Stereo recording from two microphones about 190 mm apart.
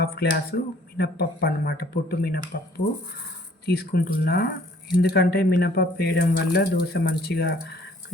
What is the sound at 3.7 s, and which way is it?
Speech, 55° left (ahead or behind).